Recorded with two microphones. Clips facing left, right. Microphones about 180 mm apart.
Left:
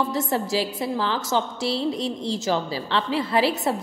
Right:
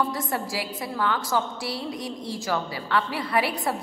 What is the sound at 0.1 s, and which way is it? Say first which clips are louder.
A woman's voice: left 5 dB; 25° left (ahead or behind).